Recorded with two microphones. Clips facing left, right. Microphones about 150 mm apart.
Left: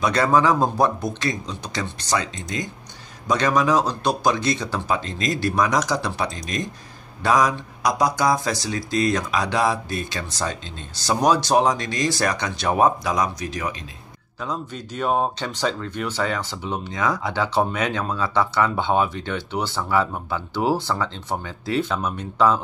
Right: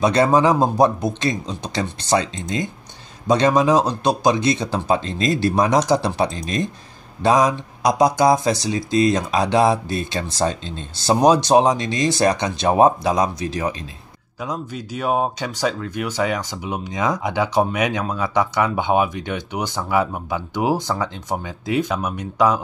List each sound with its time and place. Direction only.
0.0 s speech: 25° right (ahead or behind)
14.4 s speech: 10° right (ahead or behind)